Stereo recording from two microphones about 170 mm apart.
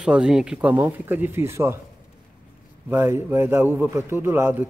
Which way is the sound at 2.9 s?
15° right (ahead or behind).